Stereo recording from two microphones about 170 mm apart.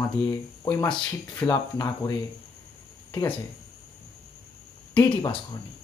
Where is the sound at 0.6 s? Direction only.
15° left (ahead or behind).